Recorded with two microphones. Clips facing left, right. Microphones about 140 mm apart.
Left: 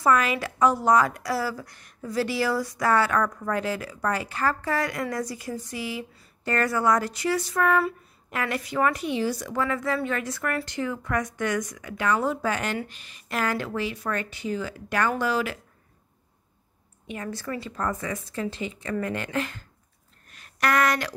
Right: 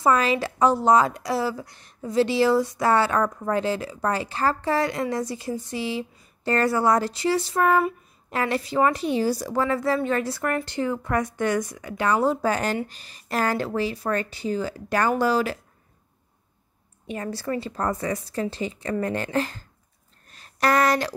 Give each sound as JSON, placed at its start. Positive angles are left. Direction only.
{"t": 0.0, "sound": "a woman's voice", "side_deg": -30}
{"t": 17.1, "sound": "speech", "side_deg": -35}
{"t": 20.2, "sound": "a sound", "side_deg": -35}